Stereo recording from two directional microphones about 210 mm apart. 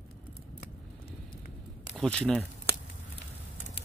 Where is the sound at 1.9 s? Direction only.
5° left (ahead or behind).